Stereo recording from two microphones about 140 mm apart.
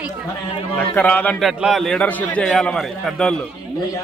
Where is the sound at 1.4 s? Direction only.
Centre (ahead or behind).